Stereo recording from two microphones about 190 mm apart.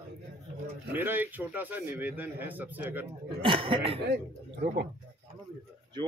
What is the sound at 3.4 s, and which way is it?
Speech, 25° right (ahead or behind).